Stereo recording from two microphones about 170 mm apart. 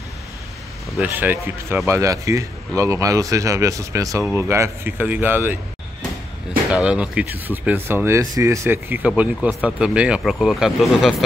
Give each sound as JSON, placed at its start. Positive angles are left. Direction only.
{"t": 0.9, "sound": "speech", "side_deg": -10}
{"t": 6.7, "sound": "speech", "side_deg": -5}